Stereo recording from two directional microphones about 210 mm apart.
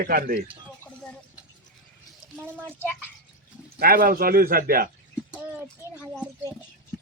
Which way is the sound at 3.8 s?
45° right (ahead or behind).